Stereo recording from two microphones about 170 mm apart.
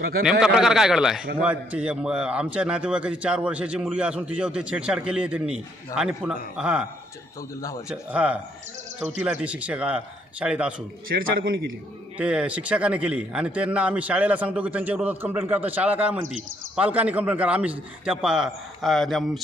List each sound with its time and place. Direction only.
0.2 s a man's voice: centre (ahead or behind)
7.9 s speech: 5° right (ahead or behind)
11.1 s a man's voice: 60° right (ahead or behind)
12.2 s speech: 5° right (ahead or behind)